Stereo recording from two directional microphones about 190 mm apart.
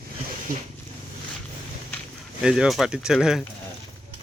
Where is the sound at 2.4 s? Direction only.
5° right (ahead or behind).